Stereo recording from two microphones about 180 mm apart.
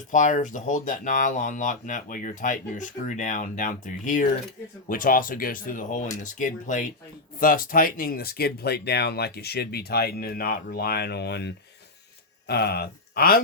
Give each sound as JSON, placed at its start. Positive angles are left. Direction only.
{"t": 0.1, "sound": "speech", "side_deg": 45}